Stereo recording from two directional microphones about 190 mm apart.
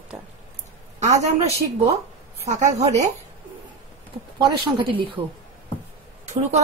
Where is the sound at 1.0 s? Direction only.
35° right (ahead or behind).